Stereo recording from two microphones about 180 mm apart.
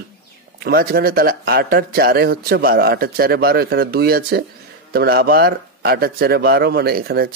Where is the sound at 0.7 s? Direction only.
55° right (ahead or behind).